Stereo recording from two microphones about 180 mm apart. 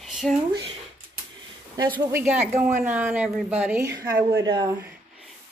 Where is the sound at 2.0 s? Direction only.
15° right (ahead or behind).